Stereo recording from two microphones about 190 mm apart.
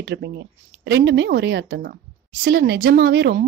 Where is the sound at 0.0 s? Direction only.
65° right (ahead or behind).